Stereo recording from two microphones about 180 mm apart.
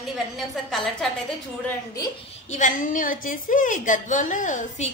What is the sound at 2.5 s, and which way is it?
A woman's voice, 45° left (ahead or behind).